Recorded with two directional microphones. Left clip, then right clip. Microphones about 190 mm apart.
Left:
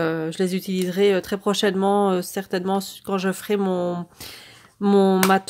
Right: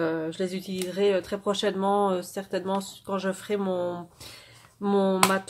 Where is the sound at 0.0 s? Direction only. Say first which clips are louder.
Left 4 dB; 55° left (ahead or behind).